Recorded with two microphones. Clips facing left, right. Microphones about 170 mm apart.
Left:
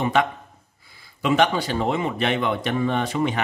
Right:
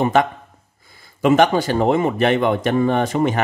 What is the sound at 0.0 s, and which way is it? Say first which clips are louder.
Speech: right 4 dB; 45° right (ahead or behind).